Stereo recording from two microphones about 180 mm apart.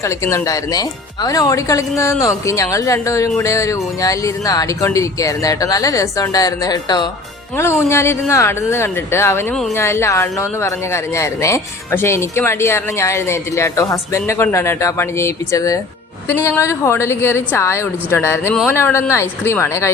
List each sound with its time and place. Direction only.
0.0 s speech: 15° left (ahead or behind)